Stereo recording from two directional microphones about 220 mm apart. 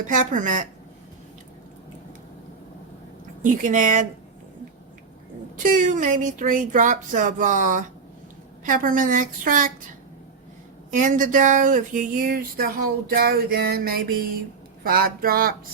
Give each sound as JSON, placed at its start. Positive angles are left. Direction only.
{"t": 0.1, "sound": "speech", "side_deg": -35}
{"t": 3.4, "sound": "speech", "side_deg": -35}
{"t": 5.5, "sound": "speech", "side_deg": -35}
{"t": 10.9, "sound": "speech", "side_deg": -35}